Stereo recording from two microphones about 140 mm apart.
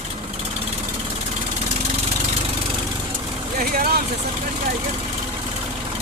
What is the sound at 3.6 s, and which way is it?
Vehicle, 90° right.